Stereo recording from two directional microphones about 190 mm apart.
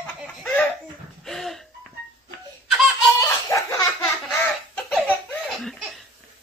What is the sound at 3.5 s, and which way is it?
Belly laugh, 15° left (ahead or behind).